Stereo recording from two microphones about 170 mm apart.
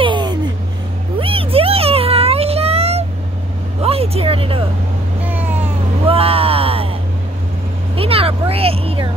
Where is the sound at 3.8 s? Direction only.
35° right (ahead or behind).